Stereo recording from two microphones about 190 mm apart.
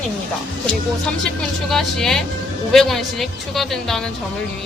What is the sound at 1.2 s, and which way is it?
A woman's voice, centre (ahead or behind).